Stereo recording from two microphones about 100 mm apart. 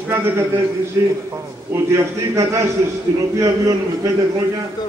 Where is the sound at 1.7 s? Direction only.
30° right (ahead or behind).